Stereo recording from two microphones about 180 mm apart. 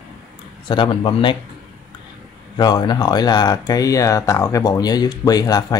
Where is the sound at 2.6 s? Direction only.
25° left (ahead or behind).